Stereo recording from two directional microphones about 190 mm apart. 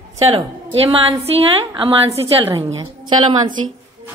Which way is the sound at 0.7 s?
30° right (ahead or behind).